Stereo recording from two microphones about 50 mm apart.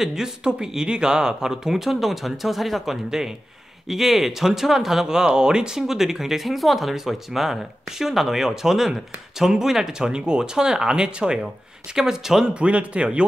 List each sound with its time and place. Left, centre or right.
0.0 s speech: centre
12.5 s a man's voice: right